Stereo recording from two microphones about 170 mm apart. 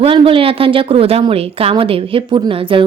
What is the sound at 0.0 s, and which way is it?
A woman's voice, 30° right (ahead or behind).